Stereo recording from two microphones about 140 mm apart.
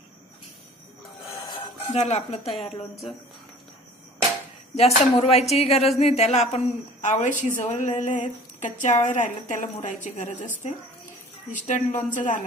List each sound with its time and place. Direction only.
1.3 s music: 30° left (ahead or behind)
1.9 s speech: 50° left (ahead or behind)
4.7 s speech: 50° left (ahead or behind)
11.5 s speech: 65° left (ahead or behind)